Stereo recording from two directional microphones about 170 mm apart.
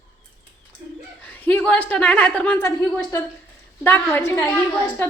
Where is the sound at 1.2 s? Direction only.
10° left (ahead or behind).